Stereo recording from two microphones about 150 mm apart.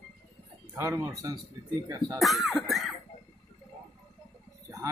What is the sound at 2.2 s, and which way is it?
Speech, centre (ahead or behind).